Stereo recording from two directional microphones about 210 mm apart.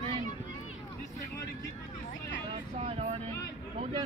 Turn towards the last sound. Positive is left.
turn(degrees=-30)  # may be behind; listen again after turning